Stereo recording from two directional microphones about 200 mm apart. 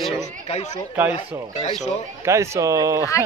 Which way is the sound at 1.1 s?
30° left (ahead or behind).